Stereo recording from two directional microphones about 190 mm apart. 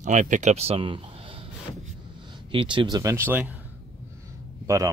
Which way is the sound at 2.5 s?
25° right (ahead or behind).